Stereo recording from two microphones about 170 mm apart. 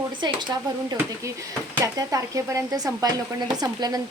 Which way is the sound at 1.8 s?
20° right (ahead or behind).